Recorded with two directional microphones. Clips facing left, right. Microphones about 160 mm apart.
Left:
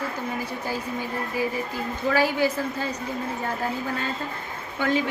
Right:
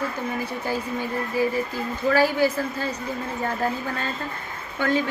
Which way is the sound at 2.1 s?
15° left (ahead or behind).